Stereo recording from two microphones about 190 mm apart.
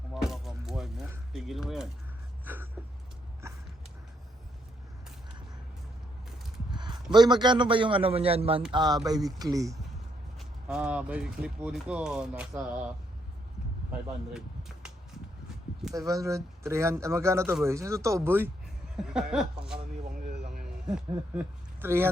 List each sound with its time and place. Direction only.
0.1 s a sound: centre (ahead or behind)
6.7 s a man's voice: 25° right (ahead or behind)
10.3 s speech: 5° right (ahead or behind)
16.0 s speech: 15° right (ahead or behind)
20.3 s a sound: 60° right (ahead or behind)
20.8 s speech: 5° right (ahead or behind)